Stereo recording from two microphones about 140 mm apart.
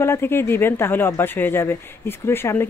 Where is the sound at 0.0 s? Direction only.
15° left (ahead or behind).